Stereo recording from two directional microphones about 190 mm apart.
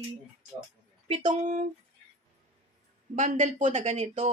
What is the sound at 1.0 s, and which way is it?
Speech, 30° right (ahead or behind).